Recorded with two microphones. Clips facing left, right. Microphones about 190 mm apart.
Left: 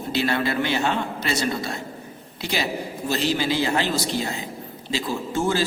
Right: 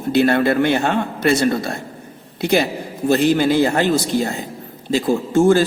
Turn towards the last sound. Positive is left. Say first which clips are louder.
# right 10 dB
turn(degrees=-50)  # may be behind; listen again after turning